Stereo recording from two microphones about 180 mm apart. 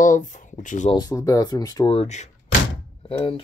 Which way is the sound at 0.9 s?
20° left (ahead or behind).